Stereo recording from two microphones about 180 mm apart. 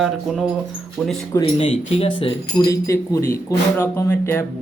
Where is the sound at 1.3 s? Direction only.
30° left (ahead or behind).